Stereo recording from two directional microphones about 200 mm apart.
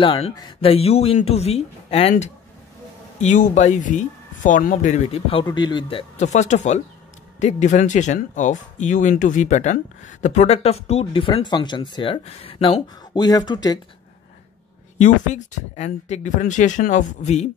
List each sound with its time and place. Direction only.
0.0 s speech: 25° left (ahead or behind)
15.0 s speech: 35° left (ahead or behind)